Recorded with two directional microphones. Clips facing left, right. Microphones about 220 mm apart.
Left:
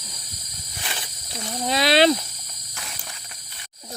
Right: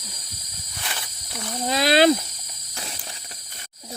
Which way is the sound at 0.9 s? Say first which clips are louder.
Even; 25° left (ahead or behind).